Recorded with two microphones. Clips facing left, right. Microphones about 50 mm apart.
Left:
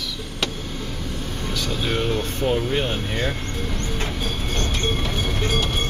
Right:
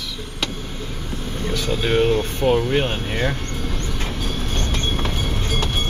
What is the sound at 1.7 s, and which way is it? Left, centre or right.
Speech, right.